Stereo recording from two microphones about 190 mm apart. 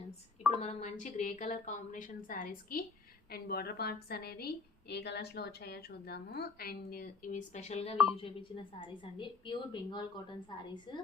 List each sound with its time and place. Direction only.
0.6 s a woman's voice: 40° left (ahead or behind)